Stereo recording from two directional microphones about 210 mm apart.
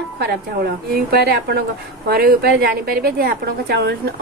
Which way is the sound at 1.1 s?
50° right (ahead or behind).